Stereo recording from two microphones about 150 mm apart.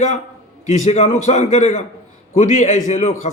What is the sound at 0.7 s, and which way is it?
A man's voice, 50° left (ahead or behind).